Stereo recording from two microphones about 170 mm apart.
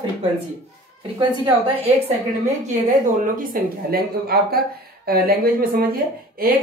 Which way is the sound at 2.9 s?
55° right (ahead or behind).